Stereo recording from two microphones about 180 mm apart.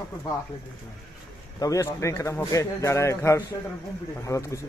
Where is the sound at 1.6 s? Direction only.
15° left (ahead or behind).